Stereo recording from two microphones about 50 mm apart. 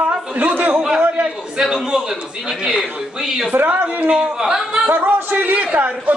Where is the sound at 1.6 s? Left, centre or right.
Centre.